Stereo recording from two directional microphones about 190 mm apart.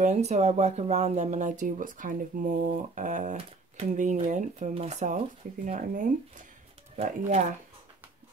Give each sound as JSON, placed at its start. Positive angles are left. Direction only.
{"t": 0.0, "sound": "speech", "side_deg": -35}